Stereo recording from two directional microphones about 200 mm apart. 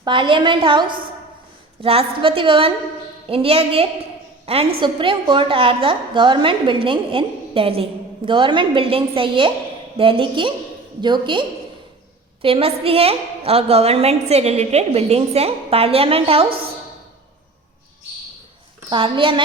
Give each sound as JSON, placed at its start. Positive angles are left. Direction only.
{"t": 0.0, "sound": "a woman's voice", "side_deg": -25}
{"t": 18.9, "sound": "a woman's voice", "side_deg": -25}